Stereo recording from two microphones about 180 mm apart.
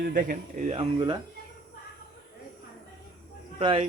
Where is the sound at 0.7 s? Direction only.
30° right (ahead or behind).